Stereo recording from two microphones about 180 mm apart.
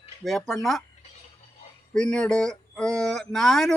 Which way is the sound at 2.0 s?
5° left (ahead or behind).